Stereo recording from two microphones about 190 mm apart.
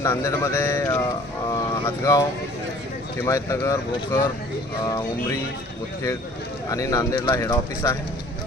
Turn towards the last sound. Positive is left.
turn(degrees=10)  # may be behind; listen again after turning